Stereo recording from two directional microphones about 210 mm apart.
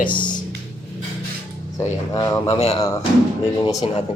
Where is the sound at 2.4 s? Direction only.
30° left (ahead or behind).